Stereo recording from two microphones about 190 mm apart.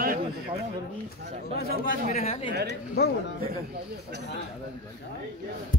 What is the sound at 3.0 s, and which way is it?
Speech, 60° left (ahead or behind).